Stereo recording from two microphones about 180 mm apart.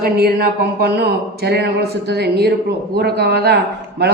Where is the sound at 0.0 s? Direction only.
60° right (ahead or behind).